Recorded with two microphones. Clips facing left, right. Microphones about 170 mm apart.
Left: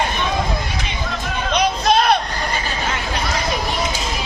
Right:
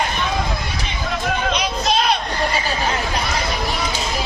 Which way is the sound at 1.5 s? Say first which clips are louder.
Left 4 dB; 55° left (ahead or behind).